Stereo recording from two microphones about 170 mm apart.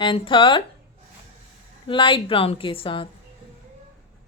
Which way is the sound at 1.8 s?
30° left (ahead or behind).